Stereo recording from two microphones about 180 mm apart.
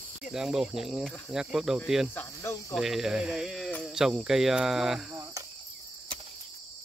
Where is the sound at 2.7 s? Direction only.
Centre (ahead or behind).